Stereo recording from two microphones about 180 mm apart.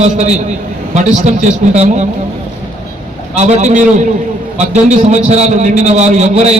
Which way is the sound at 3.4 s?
40° right (ahead or behind).